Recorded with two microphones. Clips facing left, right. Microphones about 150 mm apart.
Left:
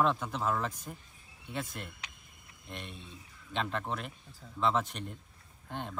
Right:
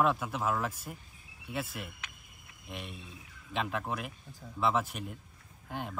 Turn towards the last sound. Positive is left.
turn(degrees=-5)  # may be behind; listen again after turning